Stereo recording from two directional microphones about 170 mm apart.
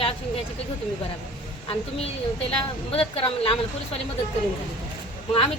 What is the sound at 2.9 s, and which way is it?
A woman's voice, 35° left (ahead or behind).